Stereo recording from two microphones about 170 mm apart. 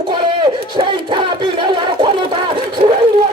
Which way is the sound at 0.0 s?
30° right (ahead or behind).